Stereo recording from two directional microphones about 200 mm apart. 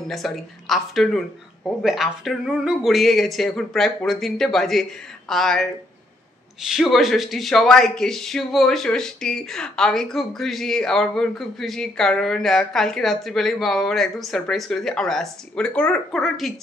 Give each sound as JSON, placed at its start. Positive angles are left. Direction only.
{"t": 0.1, "sound": "speech", "side_deg": 0}